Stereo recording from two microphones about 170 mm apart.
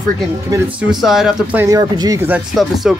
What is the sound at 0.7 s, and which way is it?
Speech, 5° right (ahead or behind).